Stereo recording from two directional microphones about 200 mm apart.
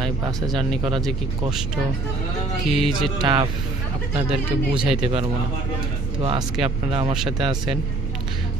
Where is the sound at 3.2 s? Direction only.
25° right (ahead or behind).